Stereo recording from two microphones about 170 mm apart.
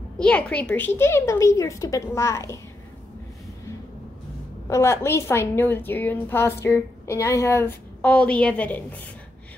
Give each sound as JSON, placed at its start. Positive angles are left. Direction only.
{"t": 0.2, "sound": "a woman's voice", "side_deg": 5}
{"t": 4.6, "sound": "a woman's voice", "side_deg": 15}